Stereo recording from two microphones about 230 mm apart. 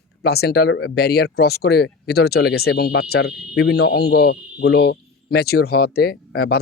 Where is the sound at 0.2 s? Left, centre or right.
Left.